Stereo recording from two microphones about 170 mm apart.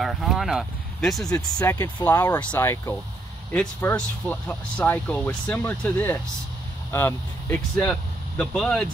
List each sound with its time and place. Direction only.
0.0 s speech: centre (ahead or behind)
1.4 s speech: 20° left (ahead or behind); by 8.8 s 5° left (ahead or behind)